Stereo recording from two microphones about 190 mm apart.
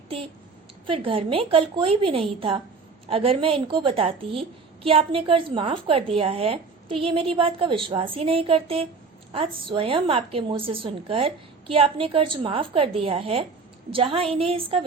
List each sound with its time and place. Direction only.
0.9 s a woman's voice: 30° right (ahead or behind)